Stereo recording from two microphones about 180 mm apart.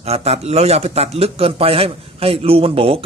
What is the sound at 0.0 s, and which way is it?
Speech, 35° right (ahead or behind).